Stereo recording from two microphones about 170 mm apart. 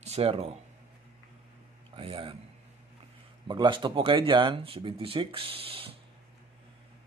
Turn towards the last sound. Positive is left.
turn(degrees=-35)  # may be behind; listen again after turning